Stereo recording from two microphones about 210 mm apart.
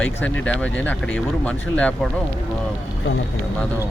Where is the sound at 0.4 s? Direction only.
5° left (ahead or behind).